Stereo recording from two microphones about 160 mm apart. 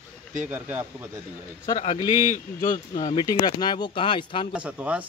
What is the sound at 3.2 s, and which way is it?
Speech, 25° left (ahead or behind).